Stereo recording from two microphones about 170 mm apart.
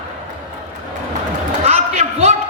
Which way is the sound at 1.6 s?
40° right (ahead or behind).